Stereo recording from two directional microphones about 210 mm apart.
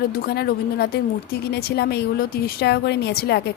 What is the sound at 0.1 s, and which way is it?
A woman's voice, 45° left (ahead or behind).